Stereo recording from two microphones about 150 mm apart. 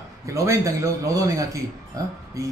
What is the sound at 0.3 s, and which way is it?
Speech, 20° right (ahead or behind).